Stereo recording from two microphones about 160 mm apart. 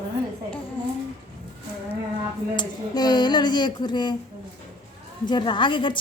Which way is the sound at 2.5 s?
25° left (ahead or behind).